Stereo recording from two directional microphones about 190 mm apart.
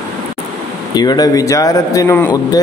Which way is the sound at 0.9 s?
20° left (ahead or behind).